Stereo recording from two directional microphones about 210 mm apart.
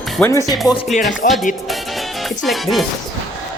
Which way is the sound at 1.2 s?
40° left (ahead or behind).